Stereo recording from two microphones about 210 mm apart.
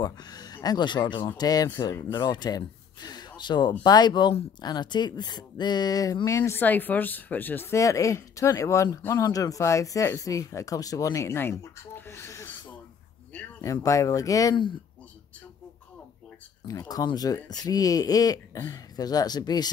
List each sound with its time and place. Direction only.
0.0 s speech: 20° left (ahead or behind)
16.6 s speech: 15° left (ahead or behind)